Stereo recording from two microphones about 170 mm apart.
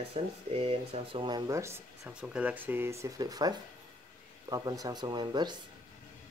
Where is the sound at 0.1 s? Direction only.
35° right (ahead or behind).